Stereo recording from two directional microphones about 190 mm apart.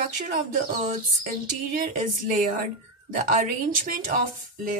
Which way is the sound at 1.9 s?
45° right (ahead or behind).